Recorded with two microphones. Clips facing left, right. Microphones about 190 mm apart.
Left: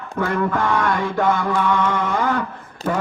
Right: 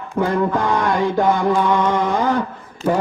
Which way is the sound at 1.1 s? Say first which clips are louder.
Right 1 dB; 30° right (ahead or behind).